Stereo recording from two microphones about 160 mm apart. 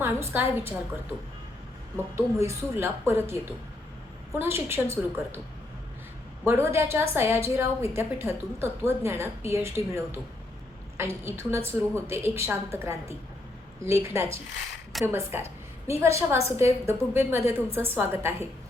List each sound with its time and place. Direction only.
0.0 s a woman's voice: 15° right (ahead or behind)
2.1 s a woman's voice: 15° right (ahead or behind)
4.4 s a woman's voice: 15° right (ahead or behind)
6.4 s a woman's voice: 15° right (ahead or behind)